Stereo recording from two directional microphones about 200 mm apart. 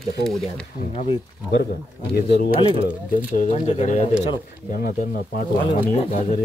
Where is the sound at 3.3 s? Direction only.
35° left (ahead or behind).